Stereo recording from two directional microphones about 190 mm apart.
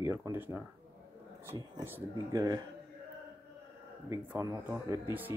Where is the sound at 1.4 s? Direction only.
20° right (ahead or behind).